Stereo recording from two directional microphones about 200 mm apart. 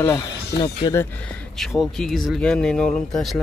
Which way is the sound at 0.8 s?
20° left (ahead or behind).